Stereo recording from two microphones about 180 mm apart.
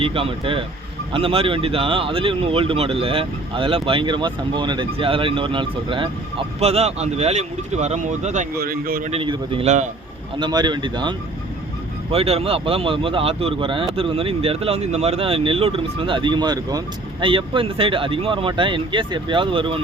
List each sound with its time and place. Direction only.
0.0 s speech: 30° right (ahead or behind)
8.5 s speech: 55° right (ahead or behind)
9.1 s speech: 30° right (ahead or behind)
10.3 s speech: 25° right (ahead or behind)
12.1 s speech: 35° right (ahead or behind)